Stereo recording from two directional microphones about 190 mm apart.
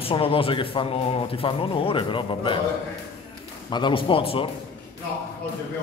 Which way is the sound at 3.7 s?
25° left (ahead or behind).